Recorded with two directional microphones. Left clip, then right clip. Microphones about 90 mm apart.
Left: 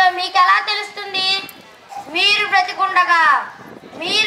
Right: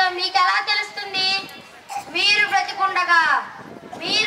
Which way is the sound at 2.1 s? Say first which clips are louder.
Left 3 dB; 35° left (ahead or behind).